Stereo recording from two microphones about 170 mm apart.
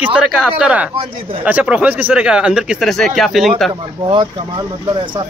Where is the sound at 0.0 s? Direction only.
5° right (ahead or behind).